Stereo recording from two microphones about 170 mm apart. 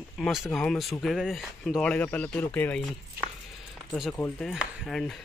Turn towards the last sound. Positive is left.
turn(degrees=0)  # may be behind; listen again after turning